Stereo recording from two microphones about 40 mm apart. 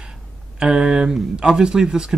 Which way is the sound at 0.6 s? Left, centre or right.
Centre.